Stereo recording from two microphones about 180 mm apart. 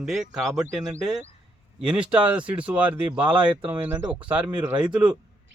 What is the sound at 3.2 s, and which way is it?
Speech, 25° right (ahead or behind).